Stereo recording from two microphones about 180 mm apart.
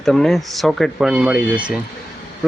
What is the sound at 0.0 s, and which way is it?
Speech, centre (ahead or behind).